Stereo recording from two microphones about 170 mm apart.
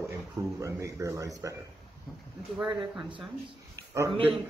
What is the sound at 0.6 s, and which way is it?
Speech, 20° right (ahead or behind).